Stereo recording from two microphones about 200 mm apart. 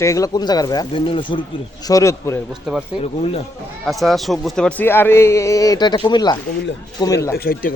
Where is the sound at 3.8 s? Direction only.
Centre (ahead or behind); by 7.1 s 20° left (ahead or behind).